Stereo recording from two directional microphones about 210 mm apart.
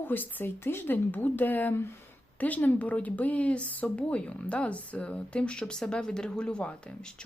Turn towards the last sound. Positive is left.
turn(degrees=5)  # may be behind; listen again after turning